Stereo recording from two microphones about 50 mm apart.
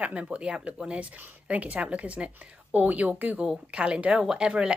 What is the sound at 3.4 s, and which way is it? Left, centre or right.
Speech, centre.